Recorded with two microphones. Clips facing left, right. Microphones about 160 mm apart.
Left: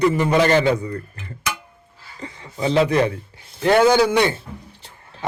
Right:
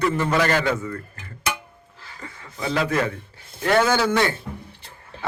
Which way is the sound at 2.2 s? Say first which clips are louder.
Left 5 dB; 20° left (ahead or behind).